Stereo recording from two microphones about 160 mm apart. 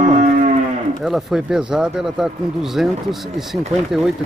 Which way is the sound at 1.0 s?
Centre (ahead or behind).